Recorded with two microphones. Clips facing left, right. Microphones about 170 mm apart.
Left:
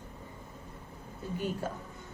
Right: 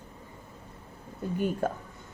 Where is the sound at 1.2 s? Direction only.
55° right (ahead or behind).